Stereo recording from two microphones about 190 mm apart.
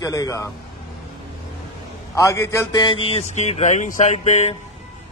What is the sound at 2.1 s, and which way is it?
Speech, 15° left (ahead or behind).